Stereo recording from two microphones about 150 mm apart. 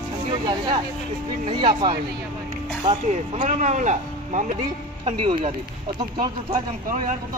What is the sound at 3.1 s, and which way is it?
Speech, 45° right (ahead or behind).